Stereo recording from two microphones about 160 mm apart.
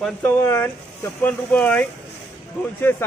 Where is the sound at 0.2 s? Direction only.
15° left (ahead or behind).